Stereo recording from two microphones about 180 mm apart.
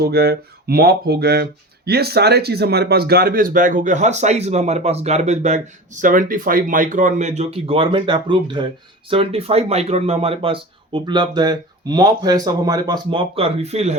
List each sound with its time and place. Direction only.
0.0 s speech: 60° right (ahead or behind); by 13.9 s 35° right (ahead or behind)